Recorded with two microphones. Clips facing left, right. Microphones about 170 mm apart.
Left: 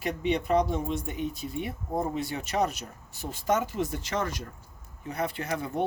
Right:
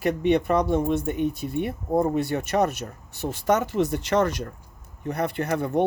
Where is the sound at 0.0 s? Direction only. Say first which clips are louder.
Right 7 dB; 60° right (ahead or behind).